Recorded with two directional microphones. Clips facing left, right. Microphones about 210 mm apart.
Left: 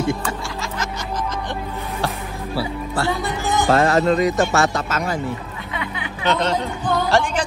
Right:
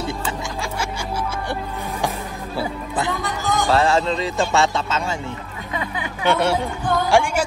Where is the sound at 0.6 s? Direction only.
10° right (ahead or behind).